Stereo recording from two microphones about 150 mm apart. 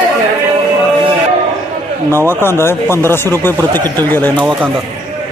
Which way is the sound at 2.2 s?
15° left (ahead or behind).